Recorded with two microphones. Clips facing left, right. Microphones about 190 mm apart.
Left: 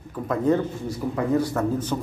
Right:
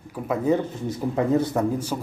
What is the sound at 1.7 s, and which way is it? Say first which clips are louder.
Speech: left 1 dB; 10° right (ahead or behind).